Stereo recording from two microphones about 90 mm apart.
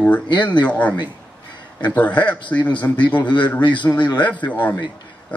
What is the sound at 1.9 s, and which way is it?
Speech, 15° left (ahead or behind).